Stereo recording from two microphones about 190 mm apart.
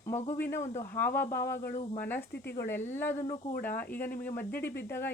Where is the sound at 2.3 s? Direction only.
55° left (ahead or behind).